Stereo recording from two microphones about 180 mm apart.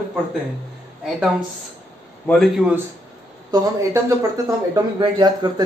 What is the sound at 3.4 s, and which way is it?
Speech, 15° right (ahead or behind).